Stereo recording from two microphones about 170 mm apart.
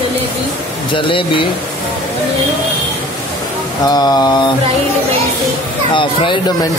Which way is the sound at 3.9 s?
25° left (ahead or behind).